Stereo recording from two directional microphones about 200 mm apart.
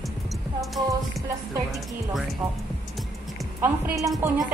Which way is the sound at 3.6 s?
10° right (ahead or behind).